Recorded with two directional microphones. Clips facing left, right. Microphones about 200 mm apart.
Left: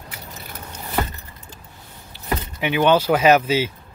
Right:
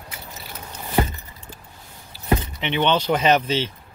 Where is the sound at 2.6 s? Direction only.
5° left (ahead or behind).